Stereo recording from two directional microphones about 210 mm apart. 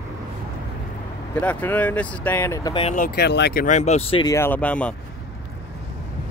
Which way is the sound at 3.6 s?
35° left (ahead or behind).